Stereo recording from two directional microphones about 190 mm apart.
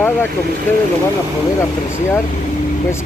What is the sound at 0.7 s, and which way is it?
Speech, 10° left (ahead or behind).